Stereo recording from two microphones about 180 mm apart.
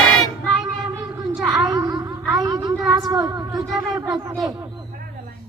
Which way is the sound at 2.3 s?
20° right (ahead or behind).